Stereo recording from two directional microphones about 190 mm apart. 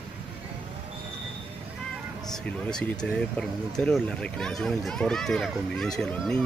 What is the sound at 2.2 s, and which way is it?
Speech, 5° left (ahead or behind).